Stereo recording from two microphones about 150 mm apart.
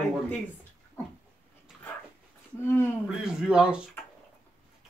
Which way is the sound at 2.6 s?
15° left (ahead or behind).